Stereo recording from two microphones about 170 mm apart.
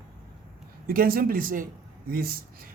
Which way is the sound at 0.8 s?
60° right (ahead or behind).